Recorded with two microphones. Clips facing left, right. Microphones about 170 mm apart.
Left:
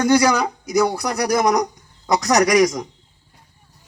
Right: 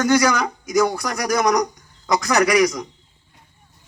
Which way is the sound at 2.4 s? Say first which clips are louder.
Even; 45° left (ahead or behind).